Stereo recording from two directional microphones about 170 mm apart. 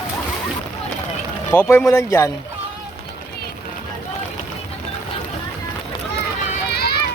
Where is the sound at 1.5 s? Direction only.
10° left (ahead or behind).